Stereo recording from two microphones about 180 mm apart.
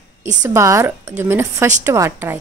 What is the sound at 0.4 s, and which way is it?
A woman's voice, 15° right (ahead or behind).